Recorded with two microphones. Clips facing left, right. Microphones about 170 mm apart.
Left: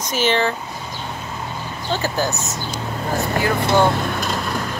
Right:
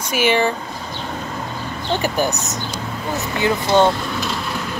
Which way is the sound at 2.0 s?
15° right (ahead or behind).